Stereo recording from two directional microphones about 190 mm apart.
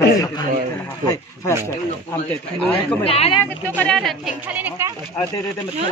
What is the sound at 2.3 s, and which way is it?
Speech, 10° left (ahead or behind).